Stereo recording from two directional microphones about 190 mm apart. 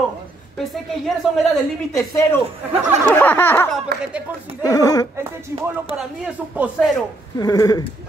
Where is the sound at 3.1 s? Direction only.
10° left (ahead or behind).